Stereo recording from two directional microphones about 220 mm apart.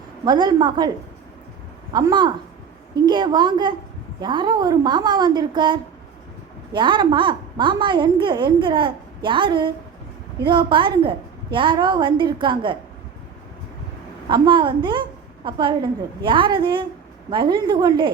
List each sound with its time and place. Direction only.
0.3 s a woman's voice: 20° right (ahead or behind)
1.9 s a woman's voice: 20° right (ahead or behind)
14.3 s a woman's voice: 20° right (ahead or behind)